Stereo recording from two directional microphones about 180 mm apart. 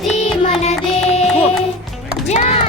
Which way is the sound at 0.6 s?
35° left (ahead or behind).